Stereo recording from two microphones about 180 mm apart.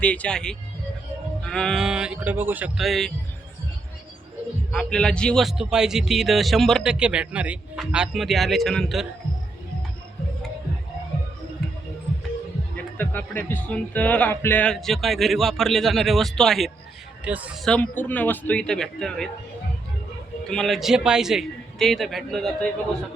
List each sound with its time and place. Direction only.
0.0 s a man's voice: 5° left (ahead or behind)
4.7 s a man's voice: 5° left (ahead or behind)
12.7 s a man's voice: 10° left (ahead or behind)
20.5 s a man's voice: centre (ahead or behind)